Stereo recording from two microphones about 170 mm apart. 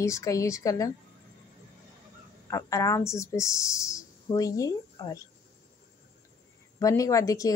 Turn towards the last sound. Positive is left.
turn(degrees=20)  # may be behind; listen again after turning